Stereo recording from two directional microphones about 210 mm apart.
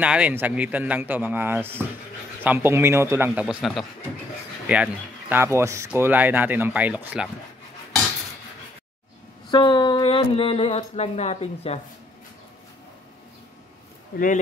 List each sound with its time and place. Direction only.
0.0 s a man's voice: 5° right (ahead or behind)
9.5 s speech: 20° left (ahead or behind)
14.1 s speech: 40° left (ahead or behind)